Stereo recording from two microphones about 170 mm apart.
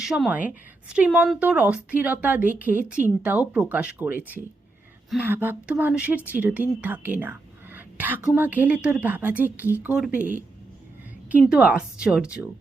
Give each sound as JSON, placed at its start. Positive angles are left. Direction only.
{"t": 0.0, "sound": "speech", "side_deg": -5}
{"t": 10.2, "sound": "a woman's voice", "side_deg": -50}
{"t": 11.3, "sound": "speech", "side_deg": -5}